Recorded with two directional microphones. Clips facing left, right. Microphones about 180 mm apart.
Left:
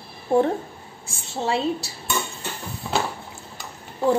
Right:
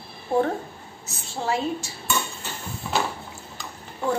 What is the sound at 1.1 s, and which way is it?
Speech, 25° left (ahead or behind).